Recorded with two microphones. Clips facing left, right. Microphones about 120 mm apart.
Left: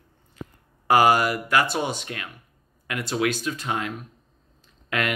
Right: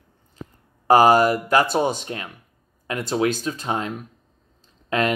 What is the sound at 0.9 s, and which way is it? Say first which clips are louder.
Speech: right 4 dB; 35° right (ahead or behind).